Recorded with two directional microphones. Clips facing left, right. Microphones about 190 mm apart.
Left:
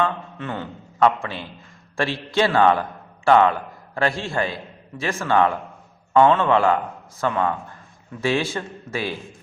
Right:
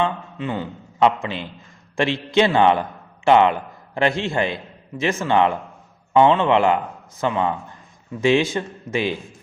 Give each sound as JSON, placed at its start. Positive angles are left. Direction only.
{"t": 0.0, "sound": "a man's voice", "side_deg": -10}